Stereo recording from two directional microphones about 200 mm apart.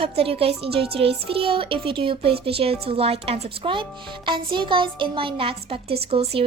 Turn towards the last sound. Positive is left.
turn(degrees=-30)  # may be behind; listen again after turning